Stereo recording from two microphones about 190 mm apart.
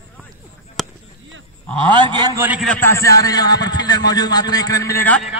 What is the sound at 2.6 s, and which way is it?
A man's voice, 10° left (ahead or behind).